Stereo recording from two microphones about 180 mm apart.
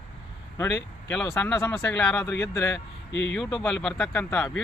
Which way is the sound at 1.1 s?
10° left (ahead or behind).